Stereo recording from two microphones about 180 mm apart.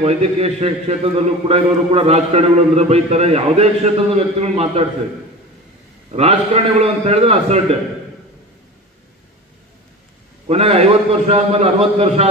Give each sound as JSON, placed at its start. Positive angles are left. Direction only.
{"t": 0.0, "sound": "a man's voice", "side_deg": -35}
{"t": 6.1, "sound": "a man's voice", "side_deg": -35}
{"t": 10.4, "sound": "a man's voice", "side_deg": -35}